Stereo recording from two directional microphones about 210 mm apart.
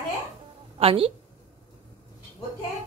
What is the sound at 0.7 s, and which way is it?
Speech, 25° right (ahead or behind).